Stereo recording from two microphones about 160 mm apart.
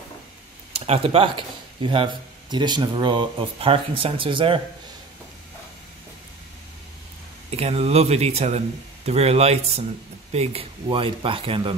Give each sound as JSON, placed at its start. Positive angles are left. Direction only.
{"t": 0.7, "sound": "speech", "side_deg": -35}
{"t": 7.5, "sound": "speech", "side_deg": -40}